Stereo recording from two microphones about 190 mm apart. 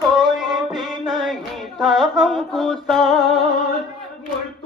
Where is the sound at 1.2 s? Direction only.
Centre (ahead or behind).